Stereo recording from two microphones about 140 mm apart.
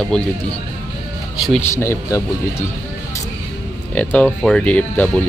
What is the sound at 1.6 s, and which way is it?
Speech, 20° left (ahead or behind).